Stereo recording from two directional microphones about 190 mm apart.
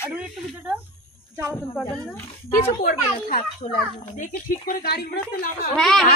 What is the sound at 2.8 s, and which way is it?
Speech, 50° left (ahead or behind).